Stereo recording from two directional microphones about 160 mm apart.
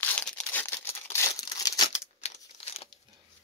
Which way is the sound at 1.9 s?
40° left (ahead or behind).